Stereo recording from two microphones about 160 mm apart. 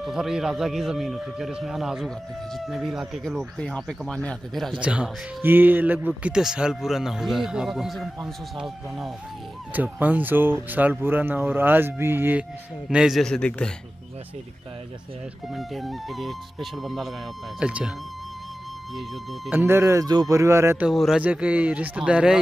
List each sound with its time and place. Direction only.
0.0 s a man's voice: centre (ahead or behind)
12.9 s a man's voice: centre (ahead or behind)
15.5 s a man's voice: centre (ahead or behind)
18.9 s a man's voice: centre (ahead or behind)
19.6 s speech: 15° right (ahead or behind)
20.8 s speech: centre (ahead or behind)